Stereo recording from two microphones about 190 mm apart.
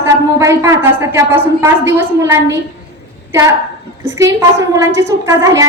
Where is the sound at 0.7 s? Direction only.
15° right (ahead or behind).